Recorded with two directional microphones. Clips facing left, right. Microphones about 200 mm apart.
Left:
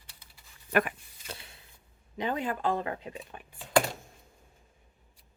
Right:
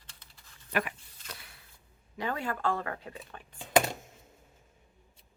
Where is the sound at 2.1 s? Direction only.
20° left (ahead or behind).